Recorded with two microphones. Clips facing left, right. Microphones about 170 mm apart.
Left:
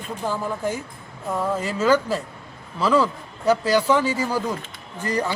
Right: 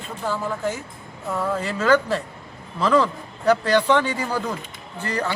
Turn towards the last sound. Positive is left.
turn(degrees=10)  # may be behind; listen again after turning